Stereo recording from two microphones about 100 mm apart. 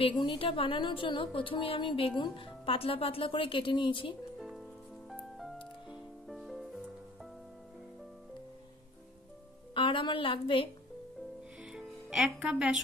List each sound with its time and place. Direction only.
0.0 s a woman's voice: 60° left (ahead or behind)
4.4 s music: centre (ahead or behind)
6.2 s music: centre (ahead or behind)
9.8 s a woman's voice: 55° left (ahead or behind)
11.6 s music: 5° right (ahead or behind)